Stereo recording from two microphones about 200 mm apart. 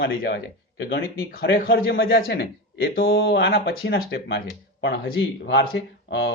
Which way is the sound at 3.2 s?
65° left (ahead or behind).